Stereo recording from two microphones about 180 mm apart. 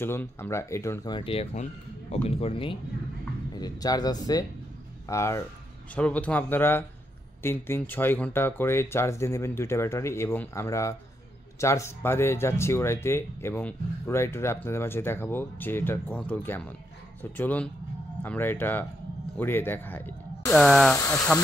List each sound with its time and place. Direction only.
0.0 s speech: 10° left (ahead or behind)